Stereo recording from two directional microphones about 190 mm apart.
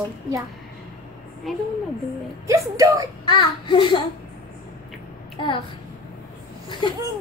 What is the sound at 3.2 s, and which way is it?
Speech, 25° left (ahead or behind).